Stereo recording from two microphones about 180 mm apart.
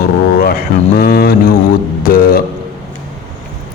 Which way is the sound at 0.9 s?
55° left (ahead or behind).